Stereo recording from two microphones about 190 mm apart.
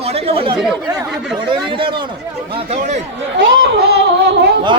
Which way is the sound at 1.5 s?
25° right (ahead or behind).